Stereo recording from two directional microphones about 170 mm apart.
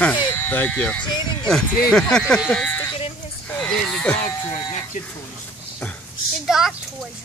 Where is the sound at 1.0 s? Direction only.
25° left (ahead or behind).